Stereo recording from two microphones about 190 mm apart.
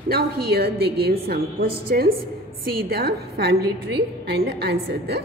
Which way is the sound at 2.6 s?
55° right (ahead or behind).